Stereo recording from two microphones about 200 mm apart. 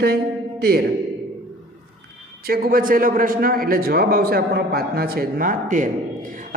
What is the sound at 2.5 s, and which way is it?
A man's voice, 45° right (ahead or behind).